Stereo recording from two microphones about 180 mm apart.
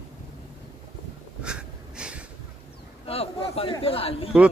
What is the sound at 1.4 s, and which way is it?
Wheeze, 5° right (ahead or behind).